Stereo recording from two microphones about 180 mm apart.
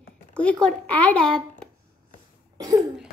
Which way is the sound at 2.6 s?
20° right (ahead or behind).